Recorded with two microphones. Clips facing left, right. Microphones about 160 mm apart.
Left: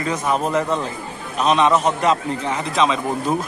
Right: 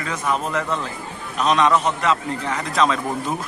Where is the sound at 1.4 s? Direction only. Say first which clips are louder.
Left 1 dB; 30° left (ahead or behind).